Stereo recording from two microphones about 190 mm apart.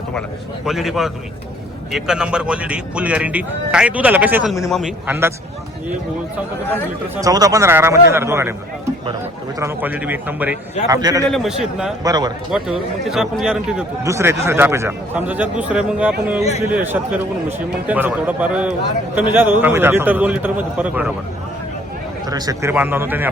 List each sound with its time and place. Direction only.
0.1 s a man's voice: centre (ahead or behind)
7.2 s a man's voice: 20° right (ahead or behind)
9.6 s a man's voice: 10° right (ahead or behind)
11.3 s speech: centre (ahead or behind)
12.0 s speech: 20° right (ahead or behind)
12.5 s a man's voice: centre (ahead or behind)
22.3 s a man's voice: 20° right (ahead or behind)